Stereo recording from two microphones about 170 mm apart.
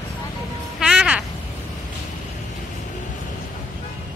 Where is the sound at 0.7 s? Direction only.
5° right (ahead or behind).